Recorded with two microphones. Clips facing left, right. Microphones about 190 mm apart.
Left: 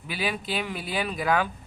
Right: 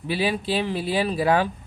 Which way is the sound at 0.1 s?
30° right (ahead or behind).